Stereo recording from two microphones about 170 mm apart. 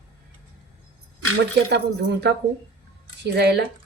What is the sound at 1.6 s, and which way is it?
Speech, 75° right (ahead or behind).